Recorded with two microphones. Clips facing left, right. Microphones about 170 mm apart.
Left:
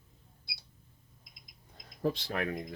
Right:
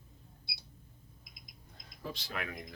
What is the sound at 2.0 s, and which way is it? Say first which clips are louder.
Speech: left 11 dB; 55° left (ahead or behind).